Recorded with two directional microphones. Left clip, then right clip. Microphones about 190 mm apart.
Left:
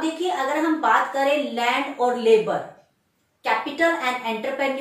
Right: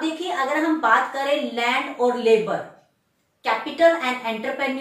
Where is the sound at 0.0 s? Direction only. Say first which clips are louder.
Even; 10° right (ahead or behind).